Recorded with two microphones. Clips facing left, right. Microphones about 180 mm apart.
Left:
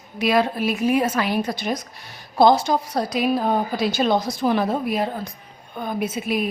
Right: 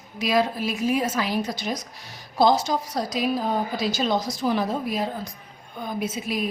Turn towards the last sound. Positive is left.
turn(degrees=60)  # may be behind; listen again after turning